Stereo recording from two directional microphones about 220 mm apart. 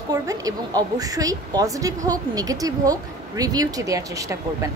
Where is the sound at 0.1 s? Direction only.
15° right (ahead or behind).